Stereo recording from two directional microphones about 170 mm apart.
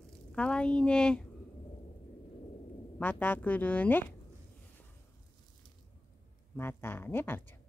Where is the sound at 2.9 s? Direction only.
10° left (ahead or behind).